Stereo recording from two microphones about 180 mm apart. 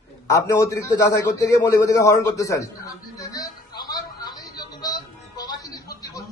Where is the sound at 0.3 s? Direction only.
15° left (ahead or behind).